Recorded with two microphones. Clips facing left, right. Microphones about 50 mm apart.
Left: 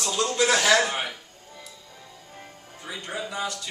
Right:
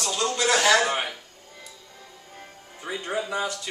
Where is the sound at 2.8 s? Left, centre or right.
Centre.